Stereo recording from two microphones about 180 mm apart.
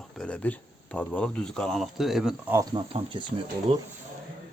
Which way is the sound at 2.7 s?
25° right (ahead or behind).